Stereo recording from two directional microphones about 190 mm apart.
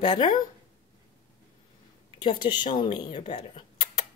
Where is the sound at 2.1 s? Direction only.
25° left (ahead or behind).